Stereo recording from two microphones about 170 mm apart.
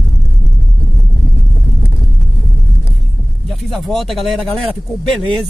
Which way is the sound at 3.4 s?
Centre (ahead or behind).